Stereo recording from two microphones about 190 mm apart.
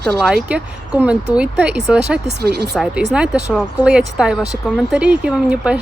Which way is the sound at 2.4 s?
55° right (ahead or behind).